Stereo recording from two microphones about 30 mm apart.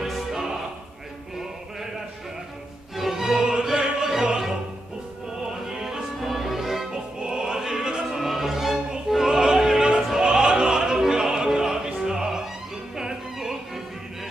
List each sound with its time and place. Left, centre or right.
0.1 s music: centre
3.0 s music: centre
3.6 s opera: centre
5.5 s music: centre
7.2 s music: right
7.5 s opera: centre
8.3 s music: centre
9.1 s opera: centre
12.9 s music: centre